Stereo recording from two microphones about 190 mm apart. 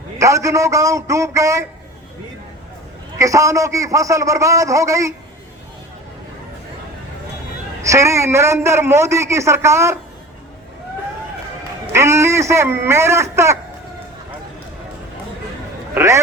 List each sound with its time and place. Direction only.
0.2 s a man's voice: 15° right (ahead or behind)
3.2 s a man's voice: 15° right (ahead or behind)
7.8 s a man's voice: 15° right (ahead or behind)
11.9 s a man's voice: 15° right (ahead or behind)
16.0 s a man's voice: 15° right (ahead or behind)